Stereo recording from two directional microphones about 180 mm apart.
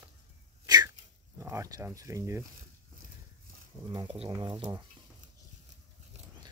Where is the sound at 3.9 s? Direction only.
30° right (ahead or behind).